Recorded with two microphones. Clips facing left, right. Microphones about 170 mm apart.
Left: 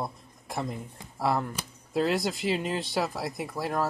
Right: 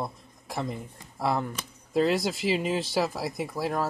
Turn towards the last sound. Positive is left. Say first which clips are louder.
# right 1 dB
turn(degrees=0)  # may be behind; listen again after turning